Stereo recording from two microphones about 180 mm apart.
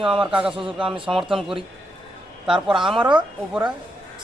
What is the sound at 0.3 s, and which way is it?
Speech, 5° right (ahead or behind).